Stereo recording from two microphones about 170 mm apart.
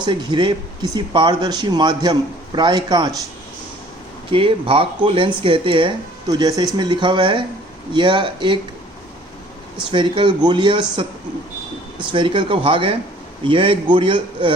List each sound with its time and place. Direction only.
0.0 s speech: 25° right (ahead or behind)
4.3 s speech: 30° right (ahead or behind)
9.9 s speech: 30° right (ahead or behind)
12.1 s speech: 30° right (ahead or behind)